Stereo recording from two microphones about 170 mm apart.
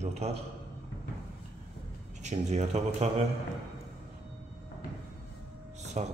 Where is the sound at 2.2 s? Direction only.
40° right (ahead or behind).